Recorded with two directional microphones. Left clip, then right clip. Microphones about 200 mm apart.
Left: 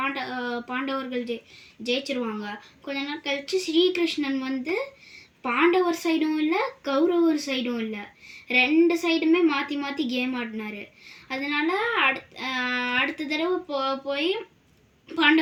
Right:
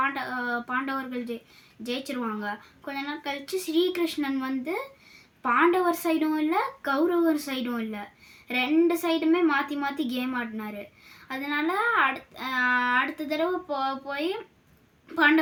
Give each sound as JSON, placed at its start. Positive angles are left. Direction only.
{"t": 0.0, "sound": "a woman's voice", "side_deg": -20}